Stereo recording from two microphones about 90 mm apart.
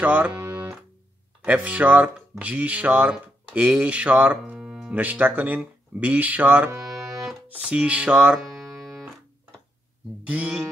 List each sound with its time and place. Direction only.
0.0 s speech: 15° right (ahead or behind)
4.6 s music: 5° right (ahead or behind)
4.9 s speech: 15° right (ahead or behind)
10.2 s speech: 15° right (ahead or behind)